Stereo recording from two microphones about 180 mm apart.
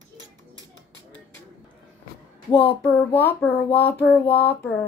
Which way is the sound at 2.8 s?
10° left (ahead or behind).